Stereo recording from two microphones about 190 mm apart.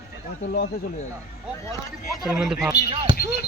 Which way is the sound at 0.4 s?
60° left (ahead or behind).